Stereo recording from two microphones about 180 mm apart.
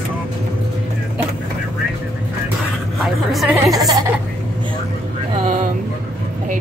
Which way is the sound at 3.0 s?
Centre (ahead or behind).